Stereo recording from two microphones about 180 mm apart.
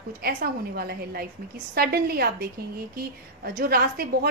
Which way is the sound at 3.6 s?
60° right (ahead or behind).